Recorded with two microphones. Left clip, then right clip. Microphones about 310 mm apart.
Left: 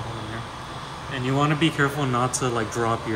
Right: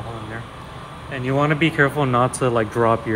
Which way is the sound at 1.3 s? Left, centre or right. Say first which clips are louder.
Right 4 dB; centre.